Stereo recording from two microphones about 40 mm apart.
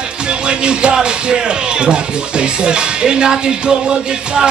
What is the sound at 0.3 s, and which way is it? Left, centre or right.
Music, right.